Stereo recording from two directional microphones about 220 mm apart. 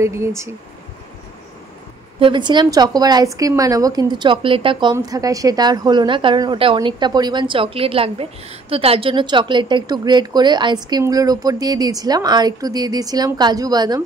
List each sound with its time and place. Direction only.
0.0 s speech: 10° right (ahead or behind)
2.1 s speech: 20° right (ahead or behind)